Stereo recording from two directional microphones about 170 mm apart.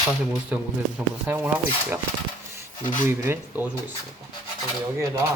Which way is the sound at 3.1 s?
15° right (ahead or behind).